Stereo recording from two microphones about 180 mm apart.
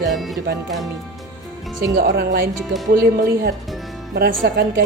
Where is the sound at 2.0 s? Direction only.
55° right (ahead or behind).